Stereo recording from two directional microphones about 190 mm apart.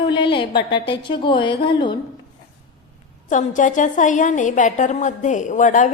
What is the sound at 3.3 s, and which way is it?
A woman's voice, 40° left (ahead or behind).